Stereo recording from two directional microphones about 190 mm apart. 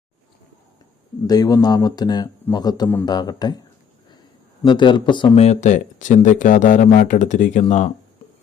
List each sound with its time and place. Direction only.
1.3 s speech: 20° left (ahead or behind)
4.6 s speech: 25° left (ahead or behind)